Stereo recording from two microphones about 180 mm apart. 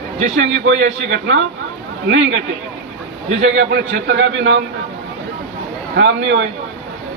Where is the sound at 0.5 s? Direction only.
90° right.